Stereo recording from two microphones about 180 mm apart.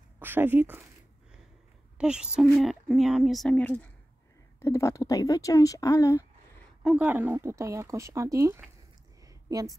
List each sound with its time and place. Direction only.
0.2 s speech: 10° right (ahead or behind)
2.0 s speech: 5° right (ahead or behind); by 6.2 s 20° left (ahead or behind)
6.8 s speech: 5° right (ahead or behind)
9.2 s a sound: 20° right (ahead or behind)